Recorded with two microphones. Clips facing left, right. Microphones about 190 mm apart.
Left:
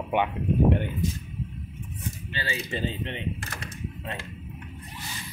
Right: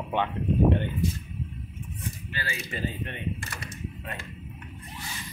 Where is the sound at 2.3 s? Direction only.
25° left (ahead or behind).